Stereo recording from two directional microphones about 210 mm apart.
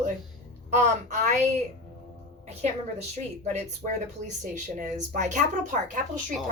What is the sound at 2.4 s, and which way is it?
Music, 30° right (ahead or behind).